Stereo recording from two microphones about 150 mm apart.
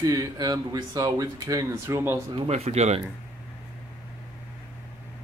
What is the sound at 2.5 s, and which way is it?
Speech, 45° right (ahead or behind).